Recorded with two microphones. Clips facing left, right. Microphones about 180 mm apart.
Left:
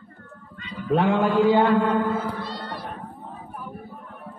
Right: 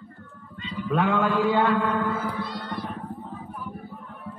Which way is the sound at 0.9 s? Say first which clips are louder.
Left 3 dB; 25° left (ahead or behind).